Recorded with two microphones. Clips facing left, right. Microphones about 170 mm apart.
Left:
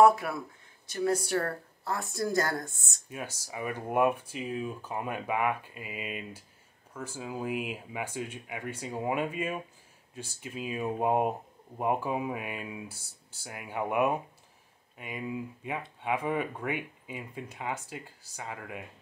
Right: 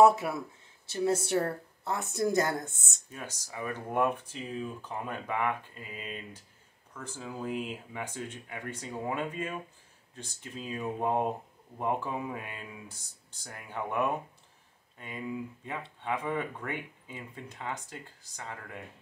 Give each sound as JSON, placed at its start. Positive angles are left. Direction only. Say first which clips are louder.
{"t": 0.0, "sound": "a woman's voice", "louder": "even", "side_deg": -25}
{"t": 3.1, "sound": "speech", "louder": "left 3 dB", "side_deg": 10}